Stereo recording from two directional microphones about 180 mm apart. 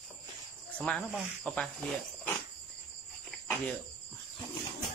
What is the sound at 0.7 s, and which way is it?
Speech, 5° left (ahead or behind).